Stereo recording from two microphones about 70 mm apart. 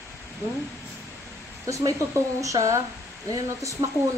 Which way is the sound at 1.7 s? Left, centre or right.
Right.